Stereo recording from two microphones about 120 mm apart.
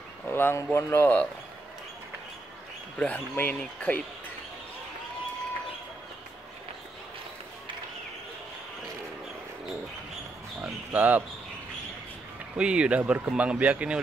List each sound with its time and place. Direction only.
0.3 s speech: 20° left (ahead or behind)
3.0 s speech: 15° left (ahead or behind)
10.6 s a sound: 15° right (ahead or behind)
12.5 s speech: 10° right (ahead or behind)